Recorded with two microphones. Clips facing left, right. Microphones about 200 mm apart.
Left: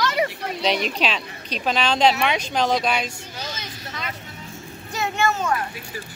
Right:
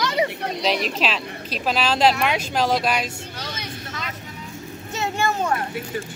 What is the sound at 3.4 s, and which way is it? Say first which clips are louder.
Vehicle: left 1 dB; 60° right (ahead or behind).